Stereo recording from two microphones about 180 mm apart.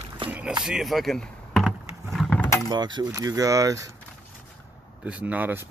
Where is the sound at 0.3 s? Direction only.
5° right (ahead or behind).